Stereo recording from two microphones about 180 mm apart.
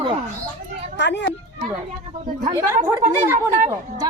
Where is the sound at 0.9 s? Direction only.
75° left (ahead or behind).